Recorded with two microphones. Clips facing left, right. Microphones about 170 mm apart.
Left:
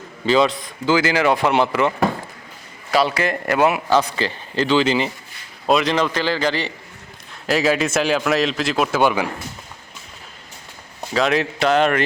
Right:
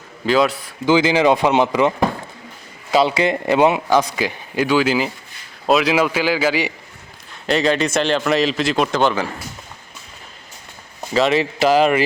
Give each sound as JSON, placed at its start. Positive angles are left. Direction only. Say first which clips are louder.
{"t": 0.3, "sound": "a man's voice", "louder": "even", "side_deg": 0}
{"t": 0.9, "sound": "a man's voice", "louder": "right 3 dB", "side_deg": -15}
{"t": 2.9, "sound": "a man's voice", "louder": "right 3 dB", "side_deg": -20}
{"t": 7.4, "sound": "a man's voice", "louder": "right 1 dB", "side_deg": 5}
{"t": 11.1, "sound": "a man's voice", "louder": "right 2 dB", "side_deg": 0}